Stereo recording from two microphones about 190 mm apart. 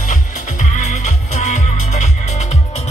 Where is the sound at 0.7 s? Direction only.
40° left (ahead or behind).